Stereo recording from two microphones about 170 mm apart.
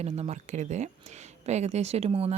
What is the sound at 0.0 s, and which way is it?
Speech, 40° right (ahead or behind).